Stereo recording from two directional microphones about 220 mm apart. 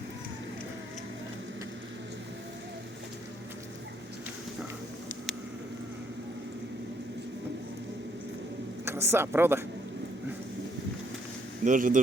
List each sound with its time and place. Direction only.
8.8 s a man's voice: 10° right (ahead or behind)
11.6 s speech: 35° right (ahead or behind)